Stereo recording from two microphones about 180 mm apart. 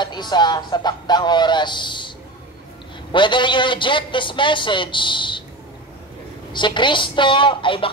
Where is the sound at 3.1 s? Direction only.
25° left (ahead or behind).